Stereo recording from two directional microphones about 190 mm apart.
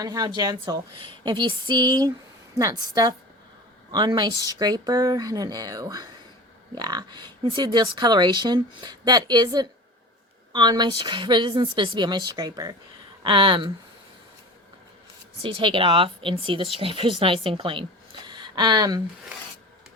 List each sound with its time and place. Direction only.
0.0 s a woman's voice: 20° right (ahead or behind)
15.4 s speech: 25° right (ahead or behind)
18.3 s a sound: 25° right (ahead or behind)